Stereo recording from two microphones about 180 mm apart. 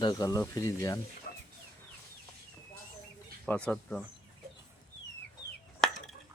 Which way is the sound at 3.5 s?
5° left (ahead or behind).